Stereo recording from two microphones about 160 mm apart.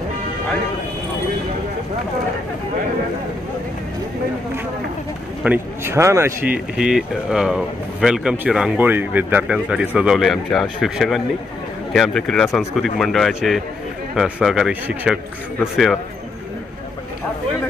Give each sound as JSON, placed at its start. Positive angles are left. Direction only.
{"t": 5.4, "sound": "speech", "side_deg": -10}
{"t": 6.8, "sound": "speech", "side_deg": -5}